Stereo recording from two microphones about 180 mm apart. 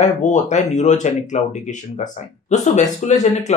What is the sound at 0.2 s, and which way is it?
Speech, 40° left (ahead or behind).